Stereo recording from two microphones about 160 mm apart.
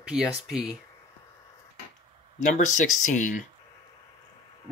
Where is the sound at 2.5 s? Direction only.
50° left (ahead or behind).